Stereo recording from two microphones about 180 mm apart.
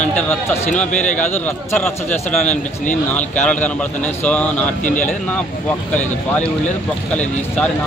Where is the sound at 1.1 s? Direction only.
10° left (ahead or behind).